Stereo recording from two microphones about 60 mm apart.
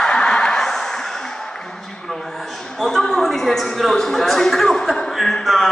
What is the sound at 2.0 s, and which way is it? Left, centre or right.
A man's voice, centre.